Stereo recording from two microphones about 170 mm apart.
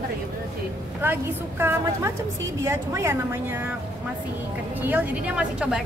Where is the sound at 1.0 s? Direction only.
15° right (ahead or behind).